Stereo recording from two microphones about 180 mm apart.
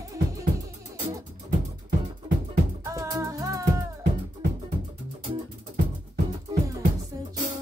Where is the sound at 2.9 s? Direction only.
15° right (ahead or behind).